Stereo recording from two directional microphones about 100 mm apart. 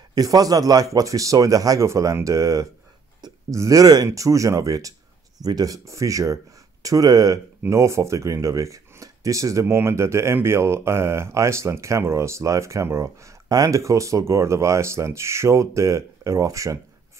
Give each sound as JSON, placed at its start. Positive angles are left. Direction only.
{"t": 0.1, "sound": "speech", "side_deg": -40}